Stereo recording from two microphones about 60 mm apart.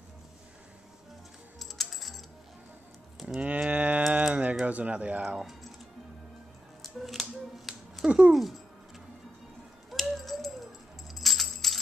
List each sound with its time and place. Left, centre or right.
1.6 s music: centre
3.3 s livestock: right
4.2 s tick-tock: right
4.6 s speech: right
6.8 s music: centre
8.1 s speech: centre
9.8 s a sound: centre
11.1 s keys jangling: centre